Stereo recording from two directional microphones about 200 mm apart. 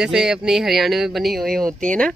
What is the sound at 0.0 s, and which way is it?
Speech, 5° right (ahead or behind).